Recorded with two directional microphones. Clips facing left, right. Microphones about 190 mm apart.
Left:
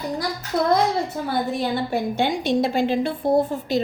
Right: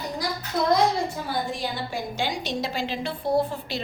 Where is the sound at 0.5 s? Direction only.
55° left (ahead or behind).